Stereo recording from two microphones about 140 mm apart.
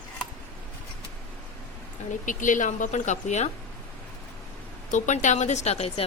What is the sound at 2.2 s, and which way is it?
Speech, 70° left (ahead or behind).